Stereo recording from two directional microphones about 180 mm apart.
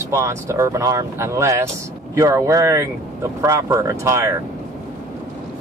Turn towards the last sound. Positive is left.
turn(degrees=-15)  # may be behind; listen again after turning